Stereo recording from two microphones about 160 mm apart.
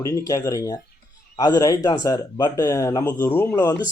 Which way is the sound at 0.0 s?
20° left (ahead or behind).